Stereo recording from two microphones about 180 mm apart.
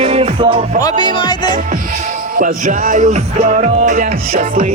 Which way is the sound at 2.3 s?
45° right (ahead or behind).